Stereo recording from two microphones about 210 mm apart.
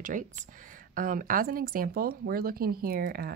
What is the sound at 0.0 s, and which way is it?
Speech, 40° right (ahead or behind).